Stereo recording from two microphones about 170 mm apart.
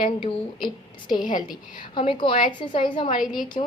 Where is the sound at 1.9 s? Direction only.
30° left (ahead or behind).